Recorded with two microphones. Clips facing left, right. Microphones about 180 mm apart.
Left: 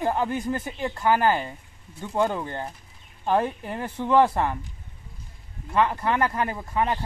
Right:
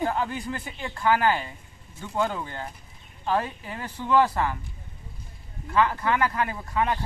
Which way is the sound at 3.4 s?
55° left (ahead or behind).